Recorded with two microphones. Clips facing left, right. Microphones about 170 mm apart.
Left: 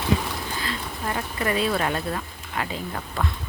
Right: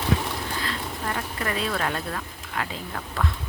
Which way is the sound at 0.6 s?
5° left (ahead or behind).